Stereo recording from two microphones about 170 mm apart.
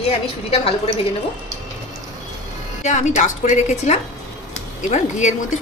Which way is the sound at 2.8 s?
45° left (ahead or behind).